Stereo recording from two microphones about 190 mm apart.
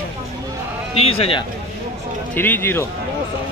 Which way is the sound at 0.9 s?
30° left (ahead or behind).